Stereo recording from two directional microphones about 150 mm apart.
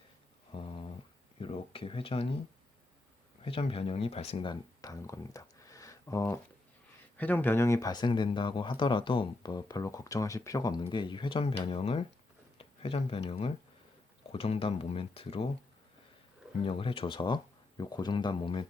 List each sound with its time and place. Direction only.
0.5 s a sound: 35° left (ahead or behind)
1.4 s speech: 35° left (ahead or behind)
3.4 s speech: 40° left (ahead or behind)
4.8 s speech: 25° left (ahead or behind); by 15.4 s 40° left (ahead or behind)
16.6 s speech: 35° left (ahead or behind)